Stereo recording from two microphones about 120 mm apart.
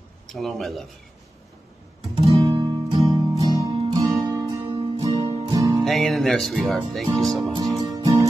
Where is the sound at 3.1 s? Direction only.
35° right (ahead or behind).